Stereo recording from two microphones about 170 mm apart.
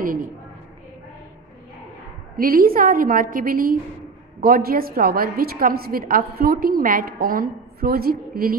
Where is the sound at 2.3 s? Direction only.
60° right (ahead or behind).